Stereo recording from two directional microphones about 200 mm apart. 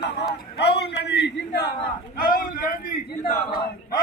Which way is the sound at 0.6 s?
55° left (ahead or behind).